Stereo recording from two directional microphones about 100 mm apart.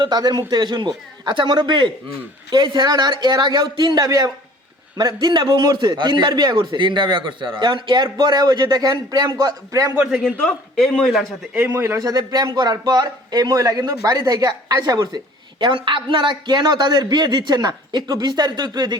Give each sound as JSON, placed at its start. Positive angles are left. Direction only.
{"t": 0.0, "sound": "a man's voice", "side_deg": -45}
{"t": 4.0, "sound": "a man's voice", "side_deg": -40}
{"t": 9.9, "sound": "speech", "side_deg": -10}
{"t": 10.8, "sound": "a man's voice", "side_deg": 5}
{"t": 11.5, "sound": "speech", "side_deg": -10}
{"t": 11.8, "sound": "a man's voice", "side_deg": -30}
{"t": 15.5, "sound": "a man's voice", "side_deg": -50}